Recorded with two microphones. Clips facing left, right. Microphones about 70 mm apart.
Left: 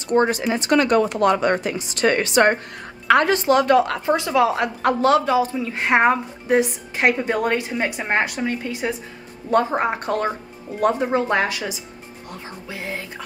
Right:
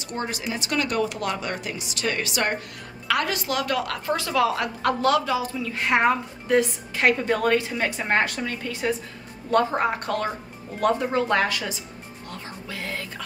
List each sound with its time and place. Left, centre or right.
0.1 s a woman's voice: left